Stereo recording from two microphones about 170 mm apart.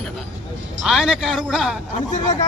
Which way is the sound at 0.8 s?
Centre (ahead or behind).